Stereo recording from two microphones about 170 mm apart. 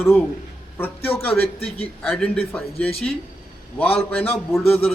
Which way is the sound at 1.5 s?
35° left (ahead or behind).